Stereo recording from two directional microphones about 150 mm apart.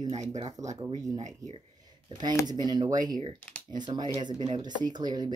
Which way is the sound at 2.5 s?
30° right (ahead or behind).